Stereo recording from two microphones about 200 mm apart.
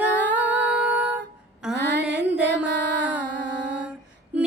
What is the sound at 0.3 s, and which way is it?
Humming, 5° right (ahead or behind).